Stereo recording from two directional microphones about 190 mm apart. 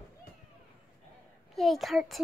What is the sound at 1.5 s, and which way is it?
Speech, centre (ahead or behind).